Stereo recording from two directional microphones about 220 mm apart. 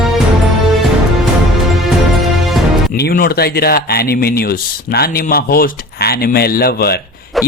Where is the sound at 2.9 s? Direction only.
45° left (ahead or behind).